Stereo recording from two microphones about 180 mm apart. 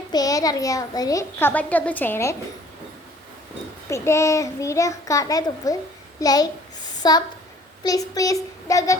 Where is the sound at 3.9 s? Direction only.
15° left (ahead or behind).